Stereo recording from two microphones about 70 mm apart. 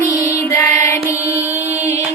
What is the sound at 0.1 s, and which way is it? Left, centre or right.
Music, left.